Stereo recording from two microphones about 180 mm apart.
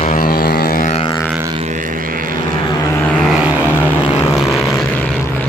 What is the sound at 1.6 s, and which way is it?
Vehicle, 45° right (ahead or behind).